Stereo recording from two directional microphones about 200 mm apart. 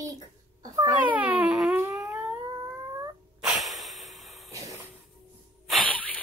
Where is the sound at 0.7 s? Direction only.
10° right (ahead or behind).